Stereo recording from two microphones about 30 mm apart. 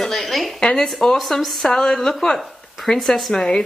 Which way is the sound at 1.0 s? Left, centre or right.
Centre.